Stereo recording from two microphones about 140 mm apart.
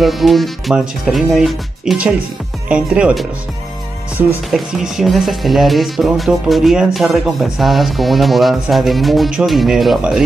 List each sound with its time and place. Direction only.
0.0 s speech: centre (ahead or behind)
4.5 s speech: centre (ahead or behind)